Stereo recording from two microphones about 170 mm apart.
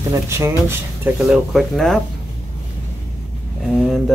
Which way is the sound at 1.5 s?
Centre (ahead or behind).